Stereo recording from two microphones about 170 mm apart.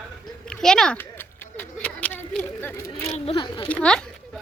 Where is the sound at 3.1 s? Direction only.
30° left (ahead or behind).